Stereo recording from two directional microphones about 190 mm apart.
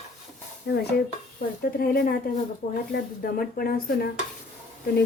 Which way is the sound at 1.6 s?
50° left (ahead or behind).